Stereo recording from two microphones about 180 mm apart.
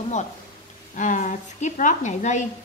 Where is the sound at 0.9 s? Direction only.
45° left (ahead or behind).